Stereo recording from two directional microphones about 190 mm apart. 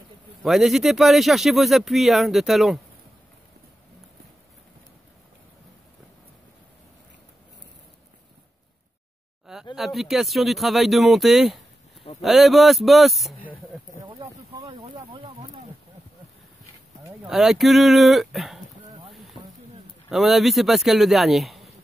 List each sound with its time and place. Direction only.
0.4 s speech: centre (ahead or behind)
9.8 s speech: centre (ahead or behind)
14.7 s a sound: 25° right (ahead or behind)
17.3 s speech: centre (ahead or behind)
20.1 s speech: centre (ahead or behind)